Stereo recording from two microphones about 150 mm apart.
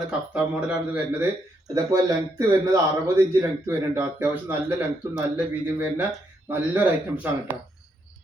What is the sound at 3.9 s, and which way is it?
Speech, 15° right (ahead or behind).